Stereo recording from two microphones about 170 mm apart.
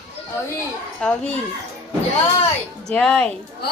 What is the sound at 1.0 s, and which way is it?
Speech, 10° left (ahead or behind).